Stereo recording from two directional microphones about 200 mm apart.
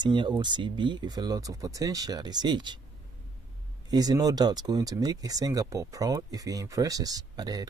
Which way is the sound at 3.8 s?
20° right (ahead or behind).